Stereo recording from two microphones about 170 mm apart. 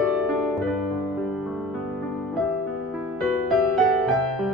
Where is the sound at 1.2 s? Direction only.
5° right (ahead or behind).